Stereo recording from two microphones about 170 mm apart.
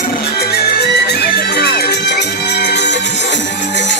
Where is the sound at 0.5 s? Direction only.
70° left (ahead or behind); by 2.9 s 90° left.